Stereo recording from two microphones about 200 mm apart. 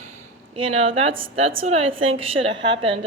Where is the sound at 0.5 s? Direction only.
30° right (ahead or behind).